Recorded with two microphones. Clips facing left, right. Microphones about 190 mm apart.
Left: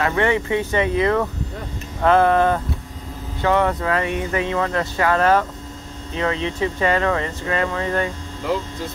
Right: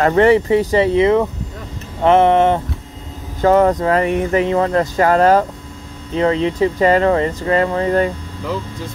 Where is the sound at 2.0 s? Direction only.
25° right (ahead or behind).